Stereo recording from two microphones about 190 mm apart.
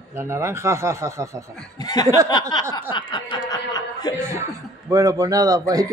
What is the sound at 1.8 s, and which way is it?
Snicker, 20° left (ahead or behind).